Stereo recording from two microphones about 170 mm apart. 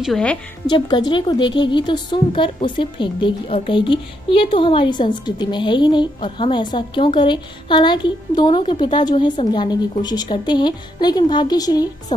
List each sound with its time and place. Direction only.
0.0 s a woman's voice: 5° left (ahead or behind)
0.7 s a woman's voice: 25° left (ahead or behind)